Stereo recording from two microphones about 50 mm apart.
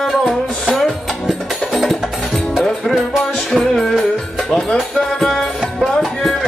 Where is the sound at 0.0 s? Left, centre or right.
Centre.